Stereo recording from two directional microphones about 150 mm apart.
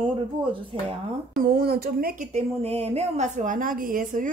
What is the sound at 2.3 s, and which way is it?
A woman's voice, 40° right (ahead or behind).